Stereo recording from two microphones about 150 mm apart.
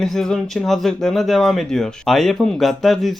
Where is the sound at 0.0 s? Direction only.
5° left (ahead or behind).